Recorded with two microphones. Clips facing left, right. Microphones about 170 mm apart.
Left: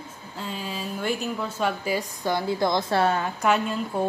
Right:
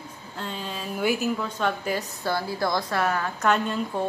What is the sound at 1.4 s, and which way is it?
A woman's voice, 5° left (ahead or behind).